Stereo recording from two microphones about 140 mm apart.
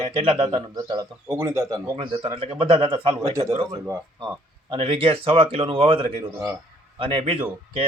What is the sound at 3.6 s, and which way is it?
Speech, 20° right (ahead or behind).